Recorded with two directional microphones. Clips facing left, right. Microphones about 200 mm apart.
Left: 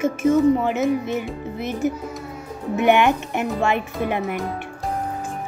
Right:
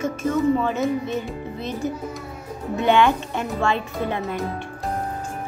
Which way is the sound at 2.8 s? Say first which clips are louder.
Left 1 dB; 15° left (ahead or behind).